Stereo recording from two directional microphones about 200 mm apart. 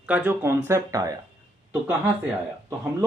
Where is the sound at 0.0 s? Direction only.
10° right (ahead or behind).